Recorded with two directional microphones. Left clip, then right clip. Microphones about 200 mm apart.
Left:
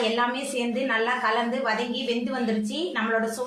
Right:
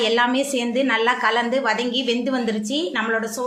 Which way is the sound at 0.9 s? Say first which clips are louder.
Right 4 dB; 45° right (ahead or behind).